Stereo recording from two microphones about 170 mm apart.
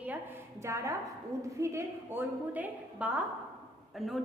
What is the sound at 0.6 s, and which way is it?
A woman's voice, 15° right (ahead or behind).